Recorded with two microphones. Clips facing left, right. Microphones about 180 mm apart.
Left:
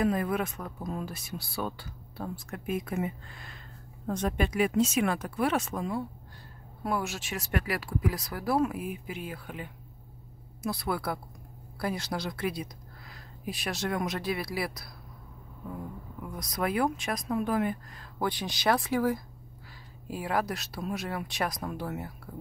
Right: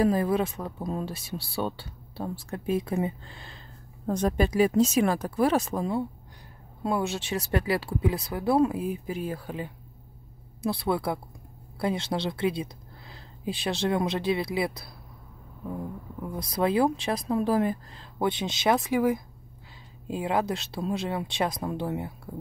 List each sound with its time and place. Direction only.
0.0 s speech: 30° right (ahead or behind)
16.3 s speech: 30° right (ahead or behind)
18.2 s speech: 25° right (ahead or behind)